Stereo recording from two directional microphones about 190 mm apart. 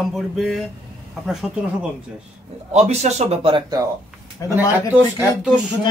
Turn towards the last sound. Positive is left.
turn(degrees=-5)  # may be behind; listen again after turning